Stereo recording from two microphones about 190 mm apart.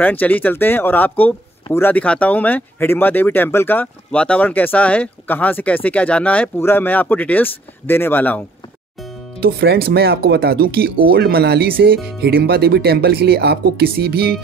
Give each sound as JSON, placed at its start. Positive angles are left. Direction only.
{"t": 0.0, "sound": "speech", "side_deg": 10}
{"t": 9.4, "sound": "speech", "side_deg": -55}